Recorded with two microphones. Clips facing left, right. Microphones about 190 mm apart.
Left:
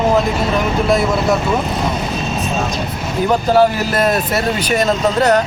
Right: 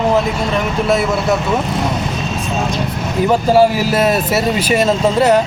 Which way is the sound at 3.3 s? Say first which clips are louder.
Right 1 dB; 5° right (ahead or behind).